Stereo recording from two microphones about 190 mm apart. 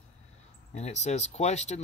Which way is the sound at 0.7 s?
35° left (ahead or behind).